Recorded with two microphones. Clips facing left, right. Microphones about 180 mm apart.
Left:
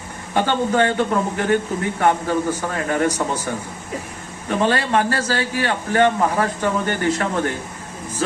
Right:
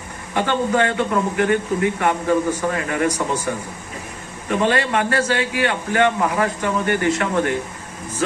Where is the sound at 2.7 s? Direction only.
35° left (ahead or behind).